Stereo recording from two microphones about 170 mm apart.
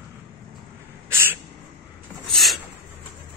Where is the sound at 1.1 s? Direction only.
15° right (ahead or behind).